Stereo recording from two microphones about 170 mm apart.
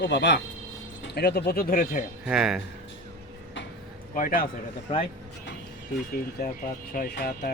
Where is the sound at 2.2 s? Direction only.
5° right (ahead or behind).